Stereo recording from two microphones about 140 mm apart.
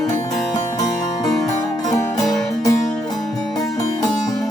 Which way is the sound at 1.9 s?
25° left (ahead or behind).